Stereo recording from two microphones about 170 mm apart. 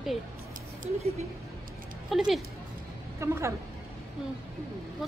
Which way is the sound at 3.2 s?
15° right (ahead or behind).